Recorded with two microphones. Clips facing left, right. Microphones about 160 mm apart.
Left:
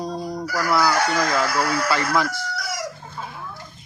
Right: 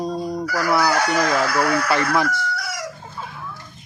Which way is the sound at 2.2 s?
55° right (ahead or behind).